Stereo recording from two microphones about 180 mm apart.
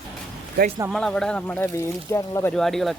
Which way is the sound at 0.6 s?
60° right (ahead or behind).